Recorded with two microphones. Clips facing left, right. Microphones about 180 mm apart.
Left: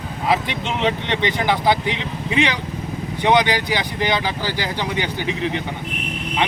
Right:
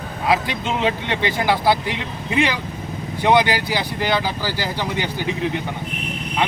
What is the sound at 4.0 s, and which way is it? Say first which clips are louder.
Speech: right 1 dB; 15° left (ahead or behind).